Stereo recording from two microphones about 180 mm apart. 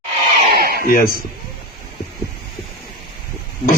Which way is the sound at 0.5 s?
55° right (ahead or behind).